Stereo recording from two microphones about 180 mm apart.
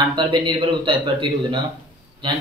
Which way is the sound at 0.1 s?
25° right (ahead or behind).